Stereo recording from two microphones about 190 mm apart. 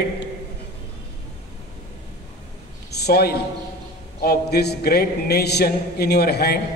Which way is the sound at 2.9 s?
55° left (ahead or behind).